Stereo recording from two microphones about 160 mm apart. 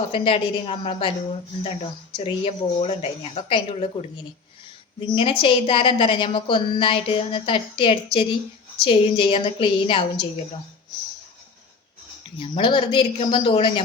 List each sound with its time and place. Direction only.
0.1 s a woman's voice: 35° left (ahead or behind)
4.9 s a woman's voice: 35° left (ahead or behind)
12.4 s a woman's voice: 30° left (ahead or behind)